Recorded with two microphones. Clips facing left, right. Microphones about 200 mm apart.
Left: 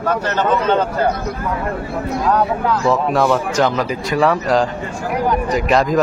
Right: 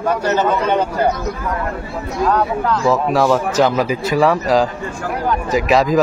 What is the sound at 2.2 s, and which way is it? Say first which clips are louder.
Speech: right 1 dB; 10° left (ahead or behind).